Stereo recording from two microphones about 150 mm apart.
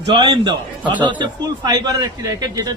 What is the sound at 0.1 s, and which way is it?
A man's voice, 30° right (ahead or behind).